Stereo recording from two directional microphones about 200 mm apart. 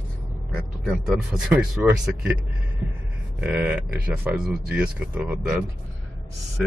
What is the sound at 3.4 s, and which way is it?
A man's voice, 10° right (ahead or behind).